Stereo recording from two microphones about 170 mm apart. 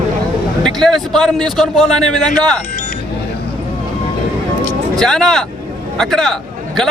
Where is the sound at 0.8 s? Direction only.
5° left (ahead or behind).